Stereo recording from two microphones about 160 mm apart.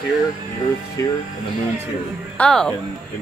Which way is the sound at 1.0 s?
20° left (ahead or behind).